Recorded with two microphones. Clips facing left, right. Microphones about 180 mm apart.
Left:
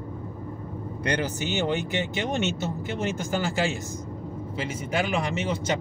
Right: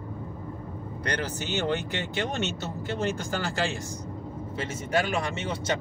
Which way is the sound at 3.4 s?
10° left (ahead or behind).